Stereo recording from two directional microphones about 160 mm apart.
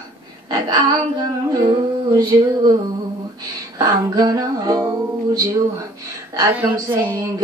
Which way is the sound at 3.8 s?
25° right (ahead or behind).